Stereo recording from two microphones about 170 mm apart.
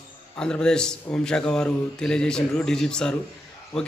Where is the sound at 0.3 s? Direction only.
5° left (ahead or behind).